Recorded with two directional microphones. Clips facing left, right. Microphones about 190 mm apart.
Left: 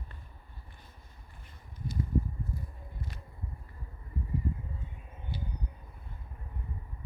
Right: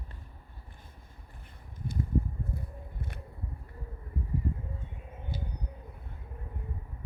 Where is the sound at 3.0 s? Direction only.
55° right (ahead or behind).